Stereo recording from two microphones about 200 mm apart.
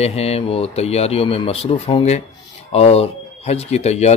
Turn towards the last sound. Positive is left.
turn(degrees=35)  # may be behind; listen again after turning